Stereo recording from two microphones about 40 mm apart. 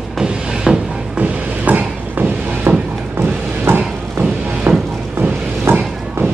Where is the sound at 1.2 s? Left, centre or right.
Right.